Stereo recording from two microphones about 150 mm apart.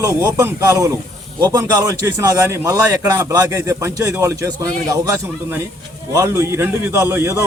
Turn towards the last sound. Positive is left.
turn(degrees=-20)  # may be behind; listen again after turning